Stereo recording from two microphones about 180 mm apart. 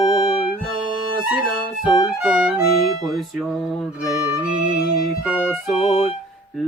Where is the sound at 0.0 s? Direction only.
30° left (ahead or behind).